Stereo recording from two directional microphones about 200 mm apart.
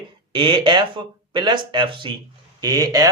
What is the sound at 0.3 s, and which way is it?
Speech, 25° right (ahead or behind).